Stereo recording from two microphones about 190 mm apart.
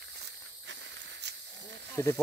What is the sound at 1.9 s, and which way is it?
Speech, 15° left (ahead or behind).